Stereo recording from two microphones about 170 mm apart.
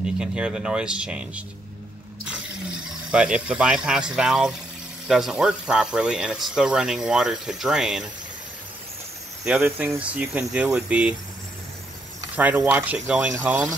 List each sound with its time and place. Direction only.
0.0 s speech: 5° right (ahead or behind)
3.1 s speech: 5° right (ahead or behind)
9.4 s speech: 5° right (ahead or behind)
12.4 s speech: 10° right (ahead or behind)